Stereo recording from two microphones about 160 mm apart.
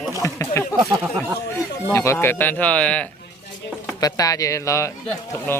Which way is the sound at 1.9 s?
15° left (ahead or behind).